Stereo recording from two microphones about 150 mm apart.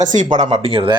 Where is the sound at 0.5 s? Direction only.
35° right (ahead or behind).